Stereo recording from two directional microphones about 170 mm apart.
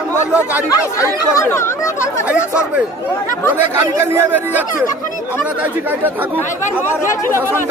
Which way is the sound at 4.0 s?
15° right (ahead or behind).